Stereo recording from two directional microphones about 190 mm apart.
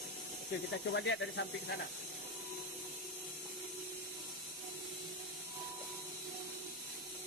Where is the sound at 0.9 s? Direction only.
70° left (ahead or behind).